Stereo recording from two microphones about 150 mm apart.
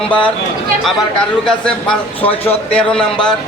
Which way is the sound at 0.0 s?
10° left (ahead or behind).